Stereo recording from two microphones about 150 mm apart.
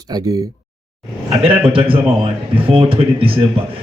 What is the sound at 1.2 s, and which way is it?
A man's voice, 35° right (ahead or behind).